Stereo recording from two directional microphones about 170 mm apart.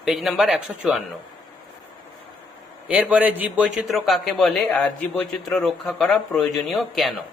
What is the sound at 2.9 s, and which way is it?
A man's voice, 10° right (ahead or behind).